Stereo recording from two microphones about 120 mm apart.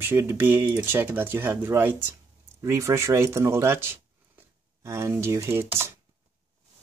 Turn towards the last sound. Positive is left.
turn(degrees=-20)  # may be behind; listen again after turning